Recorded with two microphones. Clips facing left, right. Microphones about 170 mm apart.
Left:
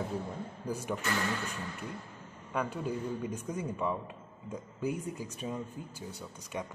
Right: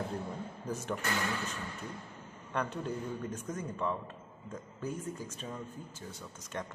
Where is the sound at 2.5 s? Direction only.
5° left (ahead or behind).